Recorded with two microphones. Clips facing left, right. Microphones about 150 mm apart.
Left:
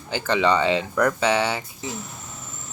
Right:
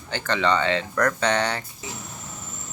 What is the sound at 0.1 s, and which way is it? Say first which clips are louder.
Speech: left 2 dB; 10° left (ahead or behind).